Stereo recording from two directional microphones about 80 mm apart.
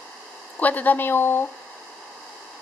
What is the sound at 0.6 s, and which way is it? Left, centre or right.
Speech, left.